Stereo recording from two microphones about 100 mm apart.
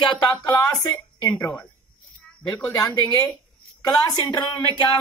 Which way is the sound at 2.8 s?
40° left (ahead or behind).